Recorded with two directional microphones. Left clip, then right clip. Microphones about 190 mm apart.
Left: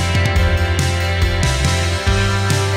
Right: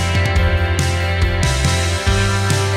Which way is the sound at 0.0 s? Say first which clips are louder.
Even; centre (ahead or behind).